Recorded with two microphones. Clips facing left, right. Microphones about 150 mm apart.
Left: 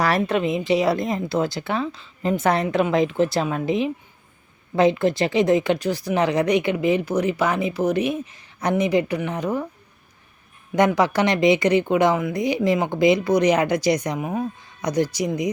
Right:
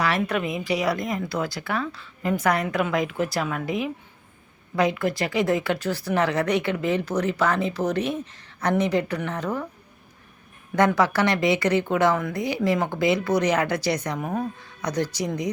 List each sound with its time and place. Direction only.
0.3 s a woman's voice: 25° left (ahead or behind)
10.8 s speech: 15° left (ahead or behind)